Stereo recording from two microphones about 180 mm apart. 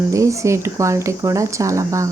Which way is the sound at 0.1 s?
15° right (ahead or behind).